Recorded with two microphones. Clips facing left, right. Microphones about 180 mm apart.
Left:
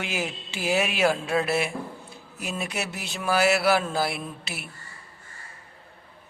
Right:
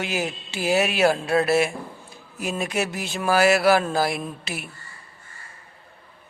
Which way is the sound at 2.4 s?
45° right (ahead or behind).